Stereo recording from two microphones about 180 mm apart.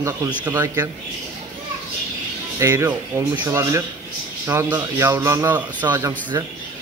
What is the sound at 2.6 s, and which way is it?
Speech, 15° right (ahead or behind).